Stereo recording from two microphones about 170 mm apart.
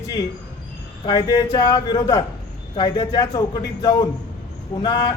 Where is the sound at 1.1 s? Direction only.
20° left (ahead or behind).